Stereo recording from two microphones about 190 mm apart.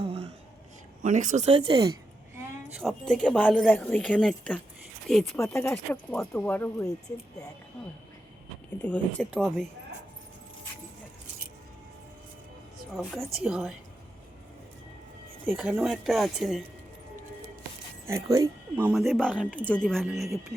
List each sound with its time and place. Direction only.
0.0 s a sound: 30° right (ahead or behind)
1.0 s speech: 40° right (ahead or behind)
2.6 s speech: 5° right (ahead or behind)
8.8 s speech: 5° left (ahead or behind)
13.0 s speech: 5° right (ahead or behind)
15.4 s speech: centre (ahead or behind)
18.0 s speech: 15° right (ahead or behind)